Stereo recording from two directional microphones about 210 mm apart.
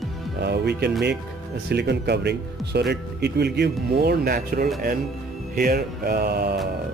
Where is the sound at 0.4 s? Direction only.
50° right (ahead or behind).